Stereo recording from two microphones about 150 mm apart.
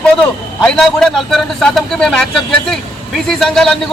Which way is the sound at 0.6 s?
5° left (ahead or behind).